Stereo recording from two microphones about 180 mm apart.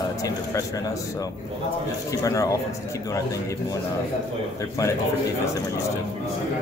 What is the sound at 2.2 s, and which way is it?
Speech, 20° left (ahead or behind).